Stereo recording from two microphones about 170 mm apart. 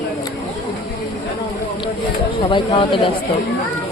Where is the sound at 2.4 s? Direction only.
30° left (ahead or behind).